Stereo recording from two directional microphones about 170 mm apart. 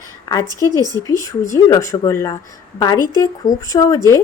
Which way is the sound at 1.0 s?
20° left (ahead or behind).